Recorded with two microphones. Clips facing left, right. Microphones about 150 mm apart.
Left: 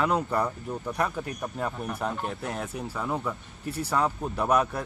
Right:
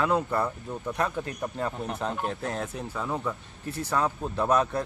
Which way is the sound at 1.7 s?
20° right (ahead or behind).